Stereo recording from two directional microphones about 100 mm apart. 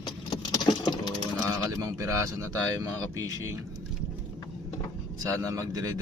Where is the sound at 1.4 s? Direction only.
30° right (ahead or behind).